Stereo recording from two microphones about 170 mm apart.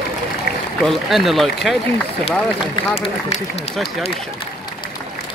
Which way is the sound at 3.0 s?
35° left (ahead or behind).